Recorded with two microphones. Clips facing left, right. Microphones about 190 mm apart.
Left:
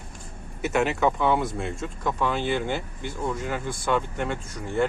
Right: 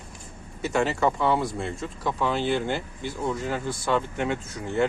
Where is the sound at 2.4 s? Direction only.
10° left (ahead or behind).